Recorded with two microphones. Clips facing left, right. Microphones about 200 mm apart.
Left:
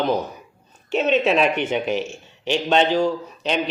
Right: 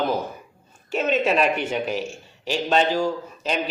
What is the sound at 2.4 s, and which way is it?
A man's voice, 5° right (ahead or behind).